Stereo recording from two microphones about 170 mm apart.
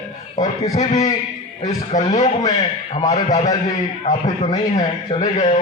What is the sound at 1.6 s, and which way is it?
A man's voice, 40° left (ahead or behind).